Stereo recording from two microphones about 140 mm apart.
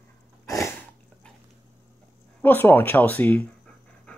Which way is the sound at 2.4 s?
15° left (ahead or behind).